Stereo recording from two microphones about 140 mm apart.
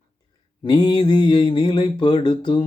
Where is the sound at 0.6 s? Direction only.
30° left (ahead or behind).